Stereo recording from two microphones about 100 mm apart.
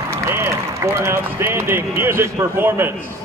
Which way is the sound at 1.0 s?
25° right (ahead or behind).